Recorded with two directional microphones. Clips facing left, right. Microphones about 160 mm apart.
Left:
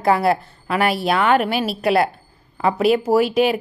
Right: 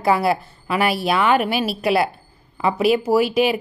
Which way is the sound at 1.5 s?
5° right (ahead or behind).